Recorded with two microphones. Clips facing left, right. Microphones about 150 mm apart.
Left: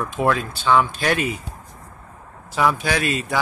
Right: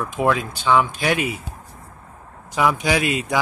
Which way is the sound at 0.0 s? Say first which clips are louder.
Even; 10° right (ahead or behind).